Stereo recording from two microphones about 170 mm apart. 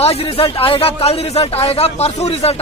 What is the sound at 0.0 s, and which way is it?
Speech, 35° left (ahead or behind).